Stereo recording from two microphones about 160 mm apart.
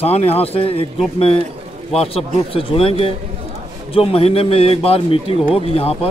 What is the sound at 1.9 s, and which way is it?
Speech, 35° left (ahead or behind).